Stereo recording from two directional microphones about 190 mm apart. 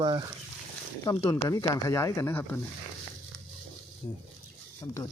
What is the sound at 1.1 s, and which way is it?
Speech, 15° left (ahead or behind).